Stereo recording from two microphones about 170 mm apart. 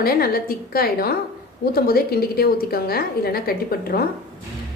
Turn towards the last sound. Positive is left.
turn(degrees=60)  # may be behind; listen again after turning